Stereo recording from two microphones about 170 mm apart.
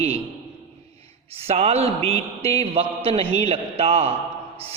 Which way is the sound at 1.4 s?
40° right (ahead or behind).